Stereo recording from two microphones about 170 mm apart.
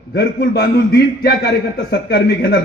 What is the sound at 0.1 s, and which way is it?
A man's voice, 85° left.